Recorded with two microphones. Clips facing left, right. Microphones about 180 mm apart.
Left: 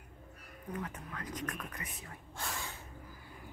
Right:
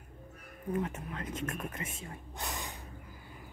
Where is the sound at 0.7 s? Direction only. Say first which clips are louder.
Right 6 dB; 25° right (ahead or behind).